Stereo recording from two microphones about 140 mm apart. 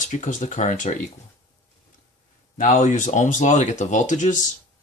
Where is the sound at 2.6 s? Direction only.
65° left (ahead or behind).